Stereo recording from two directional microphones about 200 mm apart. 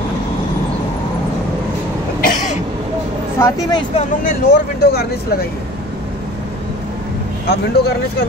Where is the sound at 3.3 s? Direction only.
20° left (ahead or behind).